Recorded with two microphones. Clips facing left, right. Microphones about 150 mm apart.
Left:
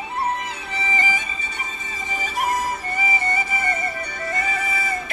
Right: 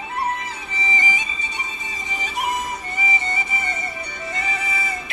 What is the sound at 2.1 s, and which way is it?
Music, 50° left (ahead or behind).